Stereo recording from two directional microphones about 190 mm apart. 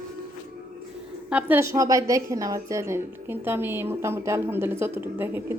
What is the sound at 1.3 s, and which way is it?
A woman's voice, 10° right (ahead or behind).